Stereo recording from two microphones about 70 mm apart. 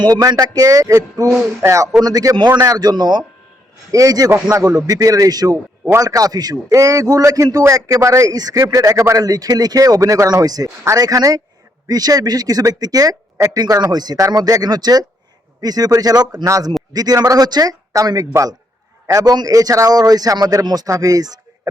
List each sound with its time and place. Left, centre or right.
0.0 s a man's voice: right
2.0 s a man's voice: right
2.6 s speech: right
3.9 s a man's voice: right
6.7 s a man's voice: right
13.9 s speech: right
16.5 s a man's voice: right
16.9 s a man's voice: right